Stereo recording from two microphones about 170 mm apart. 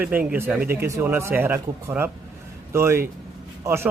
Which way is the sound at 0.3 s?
10° right (ahead or behind).